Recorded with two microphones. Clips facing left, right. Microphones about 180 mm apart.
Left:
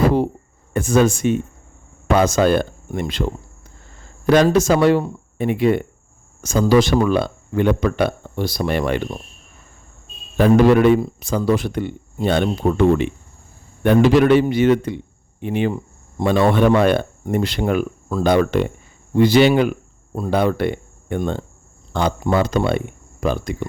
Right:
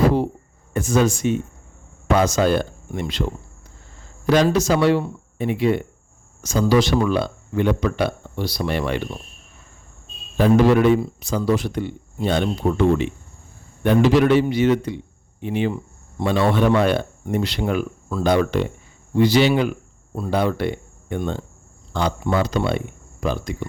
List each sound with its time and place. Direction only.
0.7 s a man's voice: 55° left (ahead or behind)
4.3 s speech: 50° left (ahead or behind)
10.3 s a man's voice: 55° left (ahead or behind)